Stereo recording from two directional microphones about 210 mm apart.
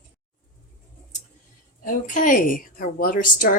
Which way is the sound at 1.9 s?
40° left (ahead or behind).